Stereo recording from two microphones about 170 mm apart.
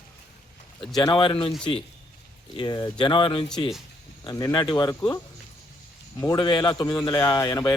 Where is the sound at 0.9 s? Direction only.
25° left (ahead or behind).